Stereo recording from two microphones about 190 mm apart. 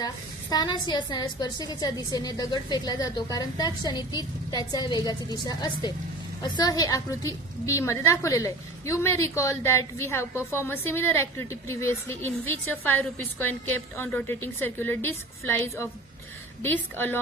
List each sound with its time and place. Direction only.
0.0 s a woman's voice: 20° left (ahead or behind)